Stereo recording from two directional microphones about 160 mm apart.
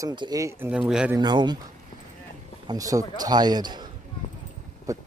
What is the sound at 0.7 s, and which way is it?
Speech, 5° right (ahead or behind).